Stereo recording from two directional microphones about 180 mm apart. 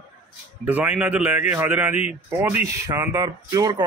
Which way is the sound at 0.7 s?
10° right (ahead or behind).